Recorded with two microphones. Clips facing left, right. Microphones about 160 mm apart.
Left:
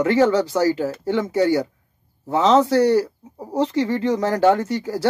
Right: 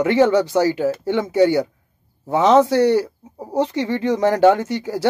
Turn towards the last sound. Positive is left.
turn(degrees=-15)  # may be behind; listen again after turning